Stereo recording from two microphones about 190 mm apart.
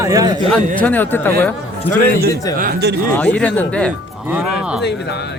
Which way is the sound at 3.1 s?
5° left (ahead or behind).